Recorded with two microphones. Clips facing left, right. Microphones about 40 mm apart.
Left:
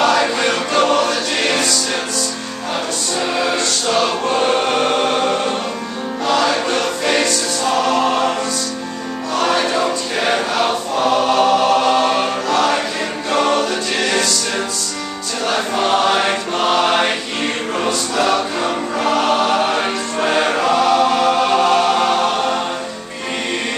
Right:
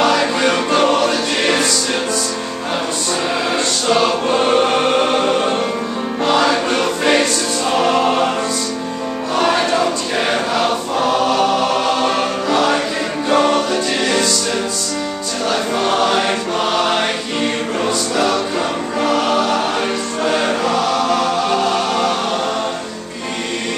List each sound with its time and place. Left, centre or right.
0.0 s music: centre
0.7 s choir: centre
3.3 s music: centre
6.4 s choir: centre
7.7 s music: right
9.3 s choir: centre
11.3 s music: centre
12.4 s choir: centre
13.3 s music: centre
15.4 s choir: centre
19.8 s music: centre